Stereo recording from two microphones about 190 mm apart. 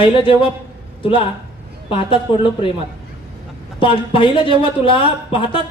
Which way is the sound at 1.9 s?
25° left (ahead or behind).